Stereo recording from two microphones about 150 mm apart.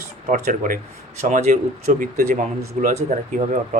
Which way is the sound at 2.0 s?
60° right (ahead or behind).